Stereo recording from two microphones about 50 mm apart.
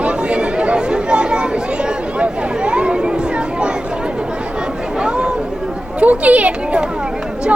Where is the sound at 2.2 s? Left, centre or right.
Right.